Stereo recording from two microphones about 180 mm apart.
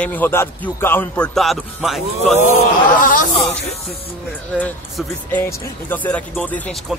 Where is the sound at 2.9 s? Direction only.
50° left (ahead or behind).